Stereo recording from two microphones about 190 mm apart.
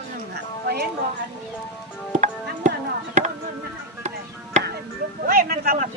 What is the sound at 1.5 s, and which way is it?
Speech, 10° left (ahead or behind).